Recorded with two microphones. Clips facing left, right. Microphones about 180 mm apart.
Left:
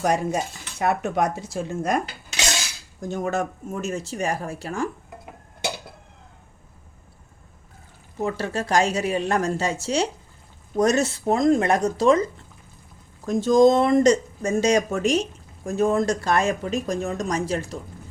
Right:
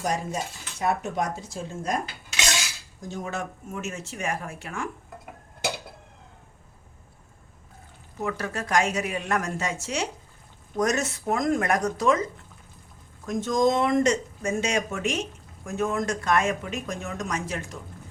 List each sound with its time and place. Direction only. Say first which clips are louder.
0.0 s speech: left 6 dB; 65° left (ahead or behind)
3.1 s speech: left 7 dB; 50° left (ahead or behind)
8.2 s speech: left 4 dB; 30° left (ahead or behind)
13.2 s speech: left 7 dB; 30° left (ahead or behind)